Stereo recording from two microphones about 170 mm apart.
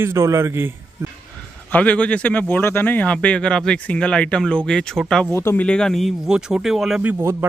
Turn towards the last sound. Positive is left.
turn(degrees=-15)  # may be behind; listen again after turning